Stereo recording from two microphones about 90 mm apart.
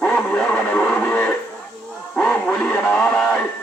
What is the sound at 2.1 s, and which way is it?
Speech, 15° left (ahead or behind).